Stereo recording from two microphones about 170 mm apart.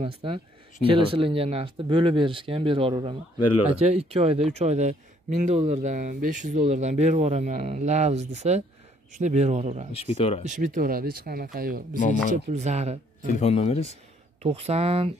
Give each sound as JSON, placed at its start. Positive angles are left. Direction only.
{"t": 0.0, "sound": "speech", "side_deg": -30}
{"t": 9.9, "sound": "speech", "side_deg": 35}
{"t": 10.4, "sound": "speech", "side_deg": -50}
{"t": 12.4, "sound": "speech", "side_deg": -40}
{"t": 13.3, "sound": "speech", "side_deg": 40}
{"t": 14.4, "sound": "speech", "side_deg": -40}